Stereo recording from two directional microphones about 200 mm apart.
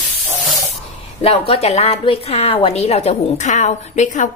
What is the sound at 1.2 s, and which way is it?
A woman's voice, 30° left (ahead or behind).